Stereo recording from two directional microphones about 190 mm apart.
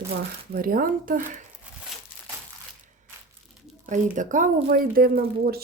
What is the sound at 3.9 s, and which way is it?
Speech, 40° right (ahead or behind).